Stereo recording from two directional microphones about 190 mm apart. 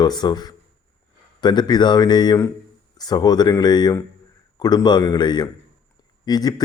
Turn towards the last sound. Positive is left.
turn(degrees=20)  # may be behind; listen again after turning